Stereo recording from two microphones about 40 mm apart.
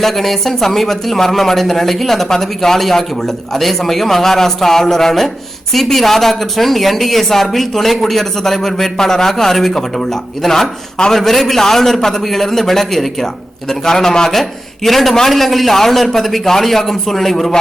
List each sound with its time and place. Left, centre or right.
0.0 s a man's voice: centre
14.8 s a man's voice: centre